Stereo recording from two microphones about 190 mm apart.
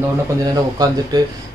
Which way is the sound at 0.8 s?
20° right (ahead or behind).